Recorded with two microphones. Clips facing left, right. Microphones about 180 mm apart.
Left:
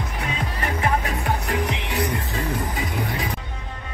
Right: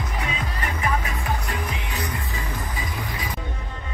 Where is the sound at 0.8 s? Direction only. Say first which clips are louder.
Left 3 dB; 65° left (ahead or behind).